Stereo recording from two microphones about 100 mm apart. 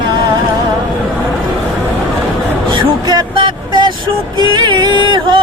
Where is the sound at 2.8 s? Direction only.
50° right (ahead or behind).